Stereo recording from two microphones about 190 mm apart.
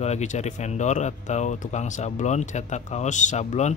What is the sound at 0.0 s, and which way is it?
Speech, 35° left (ahead or behind).